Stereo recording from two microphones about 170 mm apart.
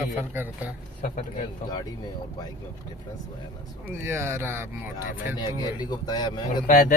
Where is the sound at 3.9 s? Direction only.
15° right (ahead or behind).